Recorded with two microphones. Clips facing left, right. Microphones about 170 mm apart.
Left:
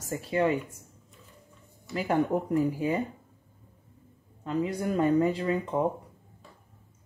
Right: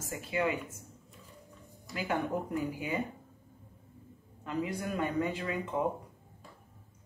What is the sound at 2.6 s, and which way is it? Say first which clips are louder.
Speech: left 7 dB; 35° left (ahead or behind).